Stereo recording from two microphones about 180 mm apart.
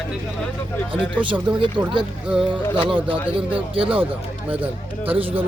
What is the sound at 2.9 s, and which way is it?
Speech, 30° right (ahead or behind).